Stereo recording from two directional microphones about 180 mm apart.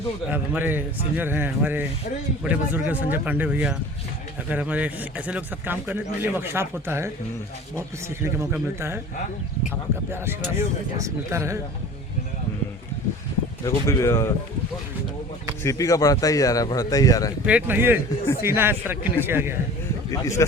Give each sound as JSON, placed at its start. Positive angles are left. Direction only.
{"t": 0.3, "sound": "a man's voice", "side_deg": -10}
{"t": 10.1, "sound": "a man's voice", "side_deg": -15}
{"t": 13.7, "sound": "speech", "side_deg": 15}
{"t": 15.6, "sound": "speech", "side_deg": 20}
{"t": 17.4, "sound": "a man's voice", "side_deg": -10}
{"t": 20.1, "sound": "speech", "side_deg": 15}